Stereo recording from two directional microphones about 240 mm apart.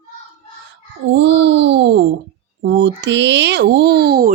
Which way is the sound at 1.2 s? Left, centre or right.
Right.